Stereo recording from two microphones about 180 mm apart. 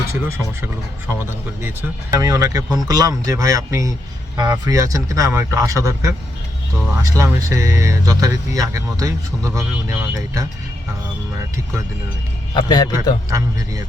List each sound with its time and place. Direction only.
2.0 s speech: 20° right (ahead or behind)
12.5 s a man's voice: 25° left (ahead or behind)